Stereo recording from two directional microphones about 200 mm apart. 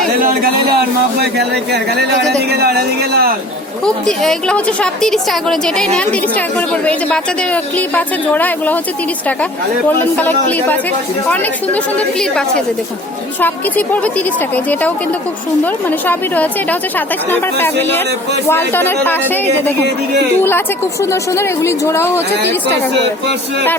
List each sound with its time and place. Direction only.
0.2 s a sound: 45° right (ahead or behind)
1.2 s speech: 55° right (ahead or behind)
3.8 s a woman's voice: centre (ahead or behind)
10.0 s a woman's voice: 10° left (ahead or behind)
21.0 s a woman's voice: 15° left (ahead or behind)